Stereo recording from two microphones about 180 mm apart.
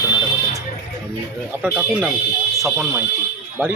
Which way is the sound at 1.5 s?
5° right (ahead or behind).